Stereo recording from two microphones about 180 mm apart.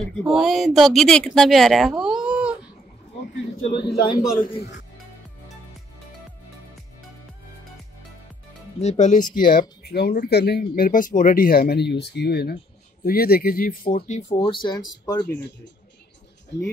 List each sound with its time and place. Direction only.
0.2 s speech: centre (ahead or behind)
3.8 s speech: 25° left (ahead or behind)
8.8 s speech: 40° left (ahead or behind)
14.4 s speech: 25° left (ahead or behind)
15.2 s speech: 70° left (ahead or behind)